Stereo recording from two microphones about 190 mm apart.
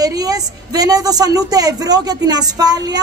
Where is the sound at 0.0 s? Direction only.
20° right (ahead or behind).